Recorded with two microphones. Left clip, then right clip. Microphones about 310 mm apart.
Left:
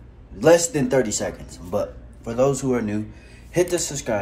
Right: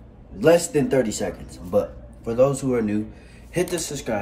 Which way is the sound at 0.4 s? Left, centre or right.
Centre.